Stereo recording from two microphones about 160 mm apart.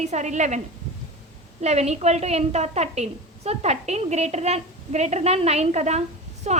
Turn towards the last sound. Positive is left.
turn(degrees=-45)  # may be behind; listen again after turning